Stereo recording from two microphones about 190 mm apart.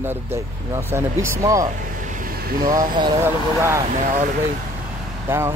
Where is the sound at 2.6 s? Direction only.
20° right (ahead or behind).